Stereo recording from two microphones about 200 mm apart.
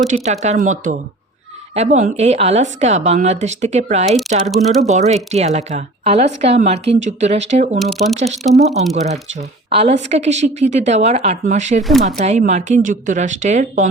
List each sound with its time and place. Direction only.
0.1 s a woman's voice: 35° right (ahead or behind)
4.4 s speech: centre (ahead or behind)
4.9 s a woman's voice: 35° right (ahead or behind)
7.8 s speech: centre (ahead or behind)
8.1 s a woman's voice: 35° right (ahead or behind)
9.4 s a woman's voice: 30° right (ahead or behind)
11.8 s speech: centre (ahead or behind)
12.0 s a woman's voice: 35° right (ahead or behind)